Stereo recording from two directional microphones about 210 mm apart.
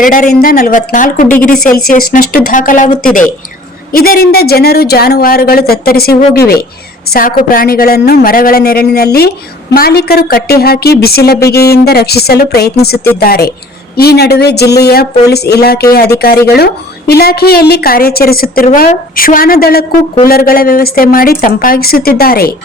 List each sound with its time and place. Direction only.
0.0 s a woman's voice: 40° left (ahead or behind)